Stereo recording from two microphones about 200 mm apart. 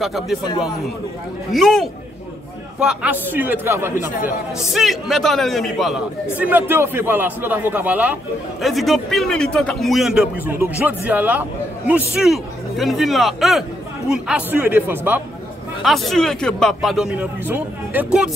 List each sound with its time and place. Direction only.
0.0 s a man's voice: centre (ahead or behind)
1.5 s a man's voice: centre (ahead or behind)
4.7 s a man's voice: centre (ahead or behind)